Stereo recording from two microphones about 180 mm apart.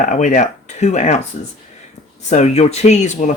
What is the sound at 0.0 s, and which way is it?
Speech, 45° left (ahead or behind).